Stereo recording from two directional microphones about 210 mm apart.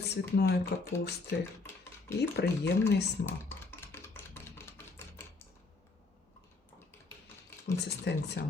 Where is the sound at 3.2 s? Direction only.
10° left (ahead or behind).